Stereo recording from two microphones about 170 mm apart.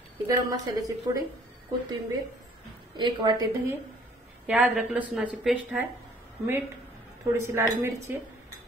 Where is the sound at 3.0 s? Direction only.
25° right (ahead or behind).